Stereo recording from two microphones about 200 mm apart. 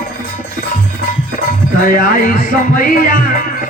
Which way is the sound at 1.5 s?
45° left (ahead or behind).